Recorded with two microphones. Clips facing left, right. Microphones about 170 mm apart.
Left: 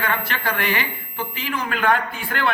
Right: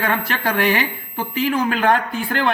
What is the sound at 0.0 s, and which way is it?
A woman's voice, 40° right (ahead or behind).